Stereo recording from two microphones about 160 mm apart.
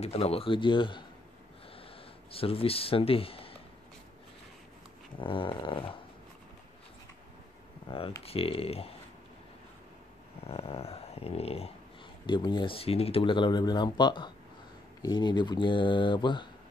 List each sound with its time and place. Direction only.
0.0 s dog: 40° left (ahead or behind)
2.3 s dog: 35° left (ahead or behind)
5.2 s dog: 35° left (ahead or behind)
8.2 s dog: 35° left (ahead or behind)
10.4 s dog: 40° left (ahead or behind)
12.3 s speech: 30° left (ahead or behind)